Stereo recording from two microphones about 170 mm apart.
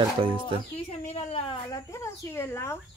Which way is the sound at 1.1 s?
35° left (ahead or behind).